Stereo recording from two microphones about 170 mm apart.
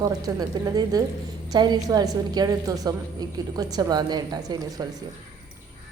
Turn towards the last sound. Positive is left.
turn(degrees=-20)  # may be behind; listen again after turning